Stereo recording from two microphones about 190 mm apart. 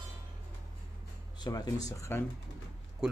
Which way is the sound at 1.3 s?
20° left (ahead or behind).